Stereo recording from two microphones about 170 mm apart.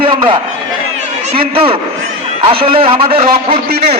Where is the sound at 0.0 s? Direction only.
35° right (ahead or behind).